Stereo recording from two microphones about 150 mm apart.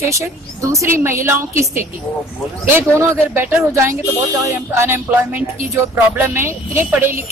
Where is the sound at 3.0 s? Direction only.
15° right (ahead or behind).